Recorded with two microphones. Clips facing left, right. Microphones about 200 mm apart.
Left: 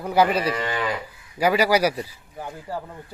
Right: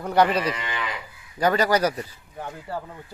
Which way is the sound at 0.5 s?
45° left (ahead or behind).